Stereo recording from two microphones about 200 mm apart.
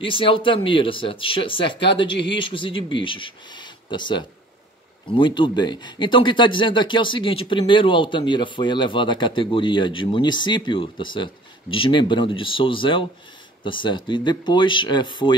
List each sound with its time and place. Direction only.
0.0 s speech: 25° left (ahead or behind)